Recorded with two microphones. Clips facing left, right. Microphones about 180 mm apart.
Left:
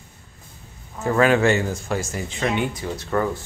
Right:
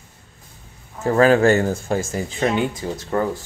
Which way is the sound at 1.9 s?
35° right (ahead or behind).